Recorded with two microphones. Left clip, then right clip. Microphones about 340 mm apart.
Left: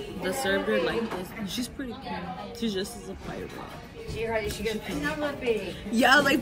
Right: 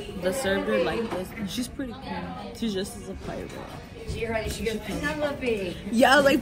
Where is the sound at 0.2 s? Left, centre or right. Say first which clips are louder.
Right 1 dB; centre.